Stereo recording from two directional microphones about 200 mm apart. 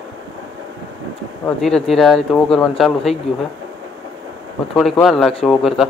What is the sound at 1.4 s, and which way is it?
Speech, centre (ahead or behind).